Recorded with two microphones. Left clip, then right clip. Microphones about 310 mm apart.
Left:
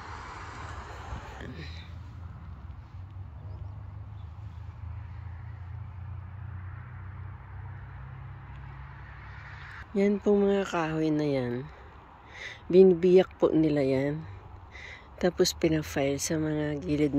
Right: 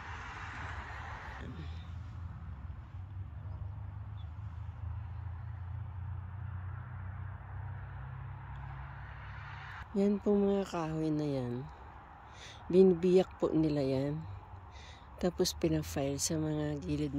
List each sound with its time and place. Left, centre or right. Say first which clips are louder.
0.0 s vehicle: left 3 dB; centre
9.3 s a sound: left 2 dB; right
9.9 s speech: left 6 dB; centre